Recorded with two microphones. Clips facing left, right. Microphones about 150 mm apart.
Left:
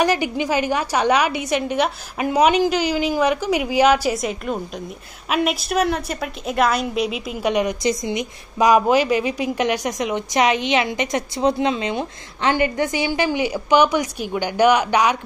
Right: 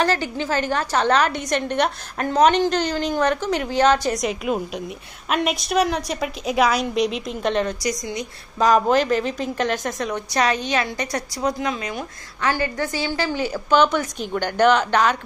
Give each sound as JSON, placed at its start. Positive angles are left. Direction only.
{"t": 0.0, "sound": "a woman's voice", "side_deg": 15}
{"t": 7.8, "sound": "a woman's voice", "side_deg": 25}